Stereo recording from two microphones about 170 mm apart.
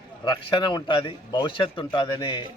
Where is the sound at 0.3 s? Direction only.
30° left (ahead or behind).